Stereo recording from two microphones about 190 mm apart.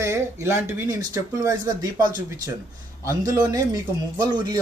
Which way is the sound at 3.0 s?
20° right (ahead or behind).